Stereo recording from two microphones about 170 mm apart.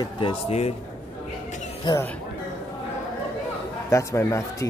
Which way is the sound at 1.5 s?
45° left (ahead or behind).